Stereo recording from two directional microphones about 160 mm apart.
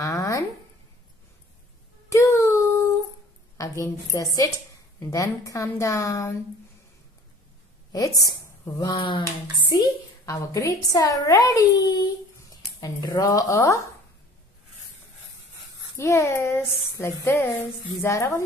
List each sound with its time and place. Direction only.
0.0 s a sound: 20° left (ahead or behind)
2.0 s music: 20° left (ahead or behind)
3.5 s a woman's voice: 20° left (ahead or behind)
7.9 s a woman's voice: 20° left (ahead or behind)
16.0 s speech: 15° left (ahead or behind)